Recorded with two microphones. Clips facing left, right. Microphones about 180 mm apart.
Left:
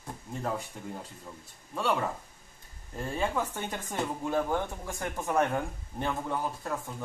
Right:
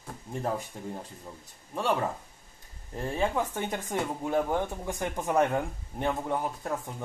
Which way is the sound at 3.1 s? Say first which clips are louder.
Right 2 dB; 20° right (ahead or behind).